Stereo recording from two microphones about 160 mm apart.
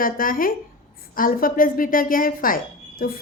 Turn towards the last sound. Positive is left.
turn(degrees=65)  # may be behind; listen again after turning